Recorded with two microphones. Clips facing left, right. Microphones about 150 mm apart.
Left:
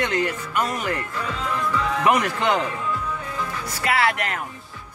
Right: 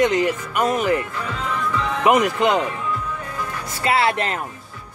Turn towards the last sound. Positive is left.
turn(degrees=-25)  # may be behind; listen again after turning